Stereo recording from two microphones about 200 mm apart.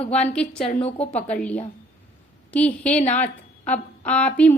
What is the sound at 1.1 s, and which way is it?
A woman's voice, 5° left (ahead or behind).